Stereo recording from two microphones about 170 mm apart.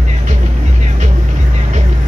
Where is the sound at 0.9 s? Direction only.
45° right (ahead or behind).